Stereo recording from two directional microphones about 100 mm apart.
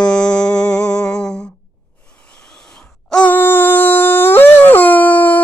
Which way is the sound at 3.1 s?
15° left (ahead or behind).